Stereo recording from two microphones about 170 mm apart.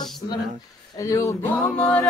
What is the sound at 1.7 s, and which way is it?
Music, 5° left (ahead or behind).